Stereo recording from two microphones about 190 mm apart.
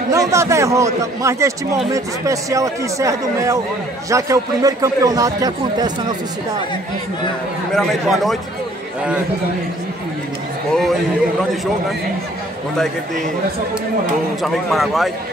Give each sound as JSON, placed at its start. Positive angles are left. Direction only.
{"t": 0.1, "sound": "a man's voice", "side_deg": -15}
{"t": 7.7, "sound": "a man's voice", "side_deg": 0}
{"t": 14.4, "sound": "a man's voice", "side_deg": 0}